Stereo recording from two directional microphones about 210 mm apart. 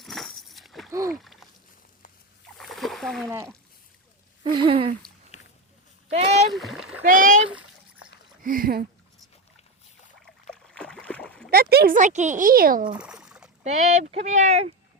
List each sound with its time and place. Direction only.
0.0 s a sound: centre (ahead or behind)
0.9 s splash: 15° right (ahead or behind)
1.2 s a sound: centre (ahead or behind)
2.6 s splash: centre (ahead or behind)
4.4 s speech: 25° right (ahead or behind)
6.1 s speech: 30° right (ahead or behind)
6.5 s splash: centre (ahead or behind)
7.0 s speech: 40° right (ahead or behind)
7.5 s splash: 5° right (ahead or behind)
8.4 s speech: 45° right (ahead or behind)
10.5 s boat: 5° left (ahead or behind)
11.5 s speech: 45° right (ahead or behind)
12.9 s a sound: 5° right (ahead or behind)
13.7 s speech: 35° right (ahead or behind)